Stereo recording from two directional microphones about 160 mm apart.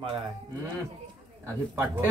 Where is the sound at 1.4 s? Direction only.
15° right (ahead or behind).